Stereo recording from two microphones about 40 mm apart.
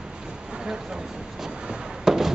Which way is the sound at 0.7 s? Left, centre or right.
Centre.